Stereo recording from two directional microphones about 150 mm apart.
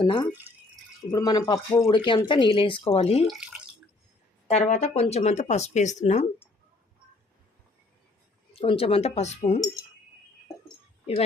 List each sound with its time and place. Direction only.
0.0 s speech: 30° left (ahead or behind)
3.2 s speech: 5° right (ahead or behind)
4.4 s speech: 50° left (ahead or behind)
8.5 s speech: 40° left (ahead or behind)